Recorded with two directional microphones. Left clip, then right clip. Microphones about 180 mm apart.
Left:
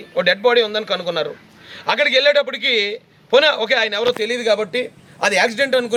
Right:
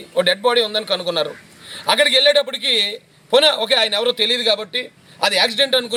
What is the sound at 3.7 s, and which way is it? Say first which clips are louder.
Speech: right 1 dB; 30° left (ahead or behind).